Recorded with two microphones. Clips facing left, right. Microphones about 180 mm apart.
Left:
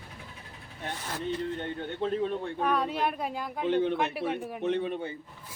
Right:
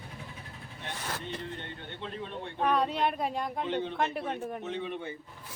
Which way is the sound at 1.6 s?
45° left (ahead or behind).